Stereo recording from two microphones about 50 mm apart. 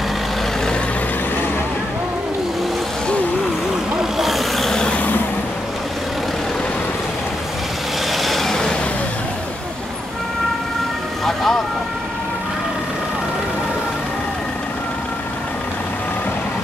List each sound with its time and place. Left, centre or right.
4.0 s vehicle: centre
4.6 s vehicle: centre
8.1 s vehicle: centre
11.2 s vehicle: centre